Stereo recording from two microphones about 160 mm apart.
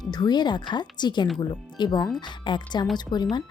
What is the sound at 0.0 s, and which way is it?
A woman's voice, 25° left (ahead or behind).